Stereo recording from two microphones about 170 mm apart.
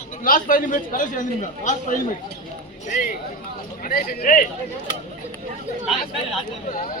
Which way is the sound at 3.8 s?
60° left (ahead or behind).